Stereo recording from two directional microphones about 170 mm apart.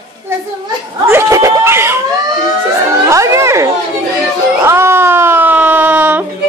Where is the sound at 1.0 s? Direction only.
15° right (ahead or behind).